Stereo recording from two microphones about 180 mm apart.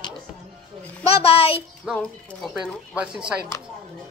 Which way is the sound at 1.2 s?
35° left (ahead or behind).